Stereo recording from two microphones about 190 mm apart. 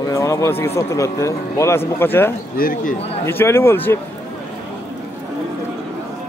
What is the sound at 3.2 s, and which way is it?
Speech, 10° left (ahead or behind).